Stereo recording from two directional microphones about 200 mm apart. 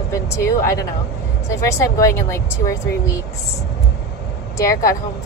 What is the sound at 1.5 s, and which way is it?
Speech, 15° left (ahead or behind).